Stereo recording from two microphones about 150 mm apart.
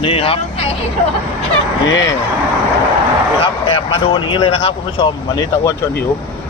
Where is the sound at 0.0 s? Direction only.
40° left (ahead or behind).